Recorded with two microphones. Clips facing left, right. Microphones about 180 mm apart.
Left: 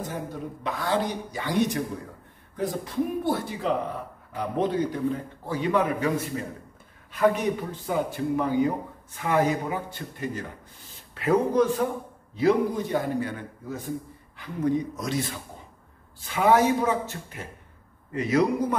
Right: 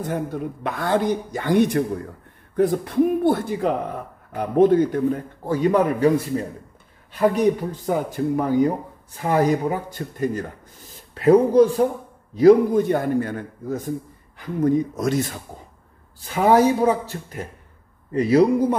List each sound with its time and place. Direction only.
0.0 s a man's voice: 60° right (ahead or behind); by 10.4 s 45° right (ahead or behind)
11.1 s speech: 35° right (ahead or behind)
12.4 s a man's voice: 45° right (ahead or behind)